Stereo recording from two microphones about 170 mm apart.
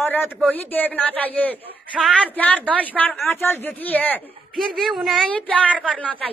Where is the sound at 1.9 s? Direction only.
5° right (ahead or behind).